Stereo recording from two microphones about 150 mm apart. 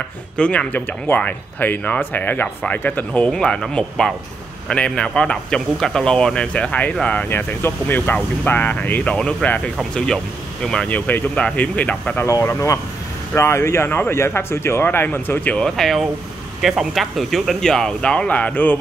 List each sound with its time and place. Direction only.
0.4 s speech: 10° left (ahead or behind)
12.3 s speech: 20° left (ahead or behind)